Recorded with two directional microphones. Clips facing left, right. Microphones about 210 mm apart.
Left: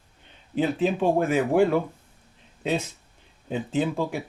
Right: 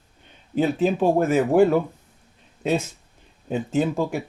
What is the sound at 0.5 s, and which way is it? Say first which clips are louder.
Speech: right 3 dB; 45° right (ahead or behind).